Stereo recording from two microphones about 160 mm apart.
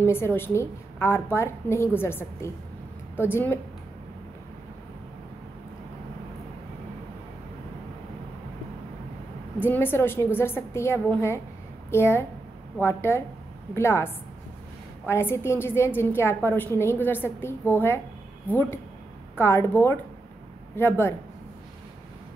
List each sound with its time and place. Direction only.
0.0 s a woman's voice: 15° left (ahead or behind)
9.6 s a woman's voice: 15° left (ahead or behind)